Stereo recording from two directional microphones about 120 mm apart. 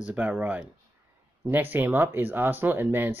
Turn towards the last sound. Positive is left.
turn(degrees=-20)  # may be behind; listen again after turning